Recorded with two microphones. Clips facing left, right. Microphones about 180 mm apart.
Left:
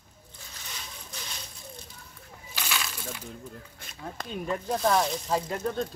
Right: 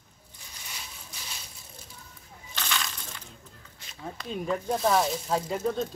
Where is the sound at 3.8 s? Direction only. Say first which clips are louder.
Left 3 dB; 50° left (ahead or behind).